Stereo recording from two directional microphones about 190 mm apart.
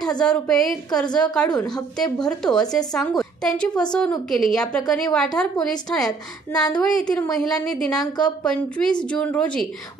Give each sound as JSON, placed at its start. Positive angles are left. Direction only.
{"t": 0.2, "sound": "a woman's voice", "side_deg": 5}
{"t": 6.0, "sound": "a woman's voice", "side_deg": 20}
{"t": 6.8, "sound": "a woman's voice", "side_deg": 5}